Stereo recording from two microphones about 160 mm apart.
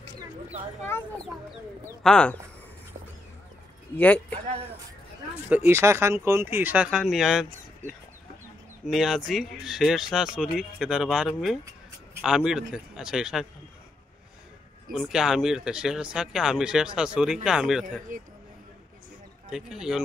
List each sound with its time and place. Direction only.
2.0 s speech: 5° left (ahead or behind)
3.9 s speech: 10° left (ahead or behind)
5.5 s speech: 15° right (ahead or behind)
8.8 s speech: centre (ahead or behind)
14.9 s speech: centre (ahead or behind)
18.1 s speech: 55° right (ahead or behind)
19.5 s speech: 5° right (ahead or behind)